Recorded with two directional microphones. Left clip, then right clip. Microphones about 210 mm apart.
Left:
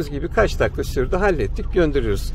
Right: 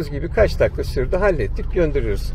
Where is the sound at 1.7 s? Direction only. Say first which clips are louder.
Left 1 dB; 20° left (ahead or behind).